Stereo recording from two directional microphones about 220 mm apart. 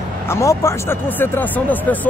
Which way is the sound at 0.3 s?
15° left (ahead or behind).